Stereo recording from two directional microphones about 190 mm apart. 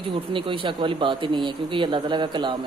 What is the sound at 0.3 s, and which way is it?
A man's voice, 25° right (ahead or behind).